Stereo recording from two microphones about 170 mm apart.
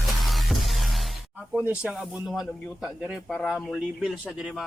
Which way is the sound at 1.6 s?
5° right (ahead or behind).